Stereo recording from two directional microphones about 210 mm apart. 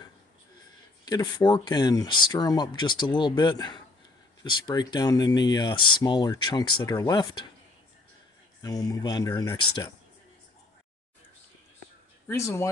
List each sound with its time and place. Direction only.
0.6 s speech: 20° left (ahead or behind)
8.6 s speech: 15° left (ahead or behind)
12.3 s speech: 15° left (ahead or behind)